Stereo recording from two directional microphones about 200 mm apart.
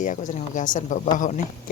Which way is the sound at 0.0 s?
40° left (ahead or behind).